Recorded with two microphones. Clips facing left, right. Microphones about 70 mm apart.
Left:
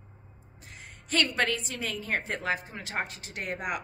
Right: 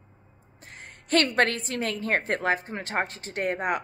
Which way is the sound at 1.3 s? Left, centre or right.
Right.